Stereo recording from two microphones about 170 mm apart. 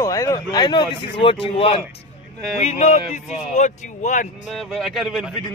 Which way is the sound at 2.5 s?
45° left (ahead or behind).